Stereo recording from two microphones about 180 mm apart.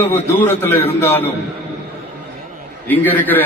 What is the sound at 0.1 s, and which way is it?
Speech, 10° left (ahead or behind).